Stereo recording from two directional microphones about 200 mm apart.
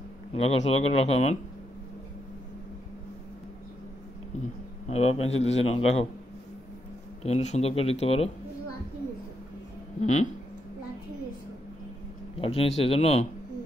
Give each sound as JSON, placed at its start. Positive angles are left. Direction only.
{"t": 0.3, "sound": "a man's voice", "side_deg": 30}
{"t": 4.4, "sound": "a man's voice", "side_deg": 35}
{"t": 7.2, "sound": "a man's voice", "side_deg": 35}
{"t": 9.9, "sound": "a man's voice", "side_deg": 35}
{"t": 12.4, "sound": "a man's voice", "side_deg": 30}